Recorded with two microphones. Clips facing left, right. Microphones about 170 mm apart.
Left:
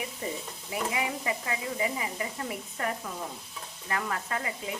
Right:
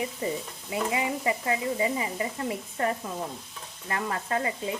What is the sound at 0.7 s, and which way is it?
Speech, 30° right (ahead or behind).